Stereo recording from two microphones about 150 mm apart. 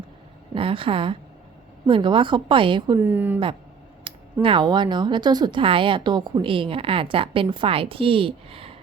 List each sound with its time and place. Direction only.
0.5 s a woman's voice: 35° right (ahead or behind)
3.0 s speech: 15° right (ahead or behind)
4.1 s a sound: 35° right (ahead or behind)
4.4 s a woman's voice: 30° right (ahead or behind)